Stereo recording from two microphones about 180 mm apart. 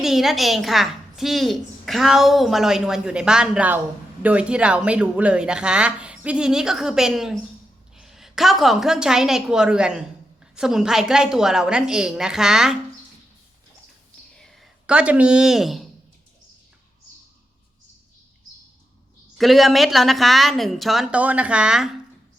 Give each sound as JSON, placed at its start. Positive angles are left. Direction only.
{"t": 0.0, "sound": "a woman's voice", "side_deg": 0}
{"t": 14.3, "sound": "speech", "side_deg": 0}
{"t": 19.4, "sound": "a woman's voice", "side_deg": 0}